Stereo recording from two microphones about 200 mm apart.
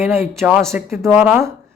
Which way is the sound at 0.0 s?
10° right (ahead or behind).